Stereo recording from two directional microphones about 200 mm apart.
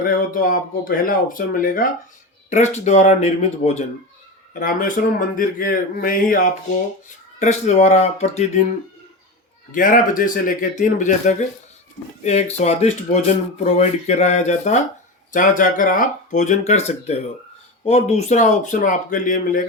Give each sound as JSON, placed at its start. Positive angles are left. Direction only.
{"t": 0.0, "sound": "speech", "side_deg": 45}
{"t": 5.0, "sound": "speech", "side_deg": 45}
{"t": 9.7, "sound": "speech", "side_deg": 40}